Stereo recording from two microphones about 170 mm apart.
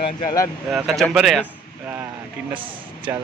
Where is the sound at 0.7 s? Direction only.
5° right (ahead or behind).